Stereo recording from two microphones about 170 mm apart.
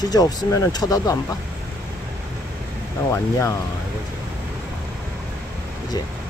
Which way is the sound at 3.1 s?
15° left (ahead or behind).